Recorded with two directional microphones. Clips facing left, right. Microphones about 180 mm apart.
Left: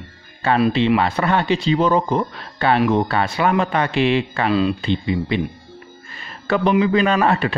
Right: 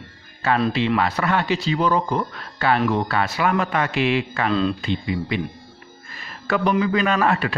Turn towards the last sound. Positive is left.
turn(degrees=30)  # may be behind; listen again after turning